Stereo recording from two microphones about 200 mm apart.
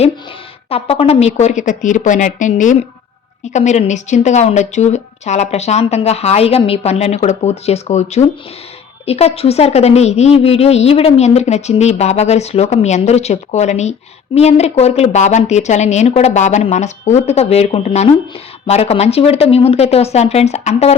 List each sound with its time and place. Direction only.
0.7 s a woman's voice: 30° left (ahead or behind)